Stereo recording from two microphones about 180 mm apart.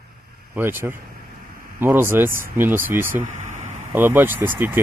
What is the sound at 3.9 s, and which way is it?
Speech, 10° right (ahead or behind).